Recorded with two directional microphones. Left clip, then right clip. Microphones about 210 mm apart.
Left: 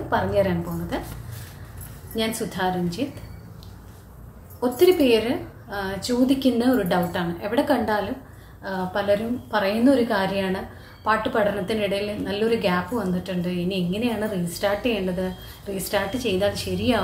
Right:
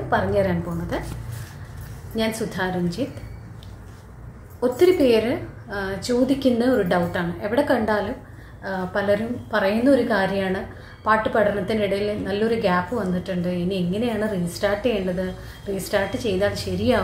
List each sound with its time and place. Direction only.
0.1 s a woman's voice: 5° right (ahead or behind)
2.1 s a woman's voice: 5° right (ahead or behind)
4.6 s a woman's voice: 5° right (ahead or behind)